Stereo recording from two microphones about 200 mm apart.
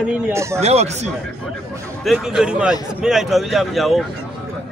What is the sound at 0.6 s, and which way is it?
Speech, 30° right (ahead or behind).